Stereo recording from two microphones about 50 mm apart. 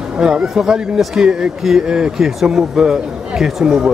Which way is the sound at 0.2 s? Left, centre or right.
Centre.